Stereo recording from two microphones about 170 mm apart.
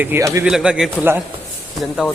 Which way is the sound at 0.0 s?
15° right (ahead or behind).